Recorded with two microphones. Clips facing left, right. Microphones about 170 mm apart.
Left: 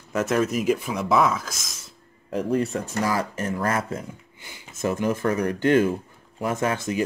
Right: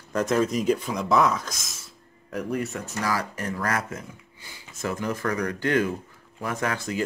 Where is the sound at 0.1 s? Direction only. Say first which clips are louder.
Left 1 dB; 5° left (ahead or behind).